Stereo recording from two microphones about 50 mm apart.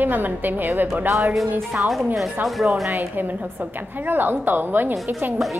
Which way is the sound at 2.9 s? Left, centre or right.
Right.